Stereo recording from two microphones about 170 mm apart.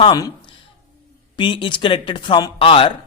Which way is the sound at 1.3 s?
30° left (ahead or behind).